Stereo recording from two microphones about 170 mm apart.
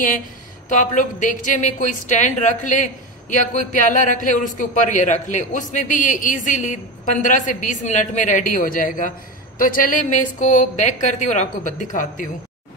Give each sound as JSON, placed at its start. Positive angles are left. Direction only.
{"t": 0.7, "sound": "a woman's voice", "side_deg": 50}